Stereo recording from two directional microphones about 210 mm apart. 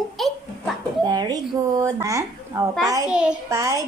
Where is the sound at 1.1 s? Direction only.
20° right (ahead or behind).